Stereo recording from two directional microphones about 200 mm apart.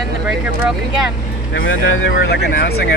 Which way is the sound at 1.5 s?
60° left (ahead or behind).